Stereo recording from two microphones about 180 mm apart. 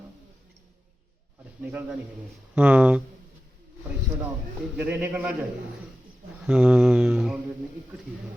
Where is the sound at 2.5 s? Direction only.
5° right (ahead or behind).